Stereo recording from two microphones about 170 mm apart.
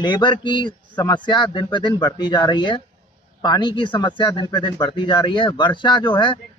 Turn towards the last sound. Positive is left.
turn(degrees=25)  # may be behind; listen again after turning